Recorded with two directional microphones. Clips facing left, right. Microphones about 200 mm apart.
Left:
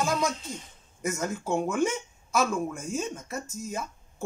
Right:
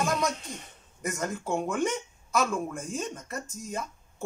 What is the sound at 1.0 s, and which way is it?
A man's voice, centre (ahead or behind).